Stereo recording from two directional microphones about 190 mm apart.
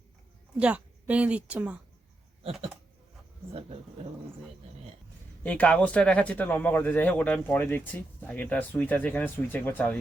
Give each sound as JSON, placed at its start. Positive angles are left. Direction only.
{"t": 0.5, "sound": "speech", "side_deg": -5}
{"t": 2.4, "sound": "a sound", "side_deg": -30}
{"t": 5.4, "sound": "speech", "side_deg": 5}